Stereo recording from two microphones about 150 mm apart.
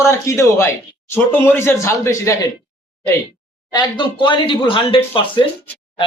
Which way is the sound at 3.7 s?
30° left (ahead or behind).